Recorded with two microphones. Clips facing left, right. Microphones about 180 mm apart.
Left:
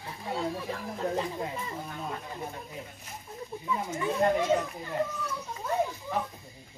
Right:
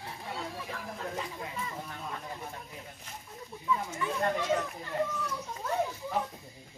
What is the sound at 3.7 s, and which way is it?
Speech, 20° left (ahead or behind).